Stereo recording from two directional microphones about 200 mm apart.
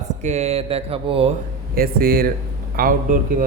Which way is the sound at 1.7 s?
45° right (ahead or behind).